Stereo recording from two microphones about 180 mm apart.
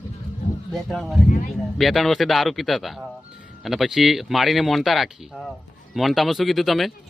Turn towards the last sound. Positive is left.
turn(degrees=0)  # may be behind; listen again after turning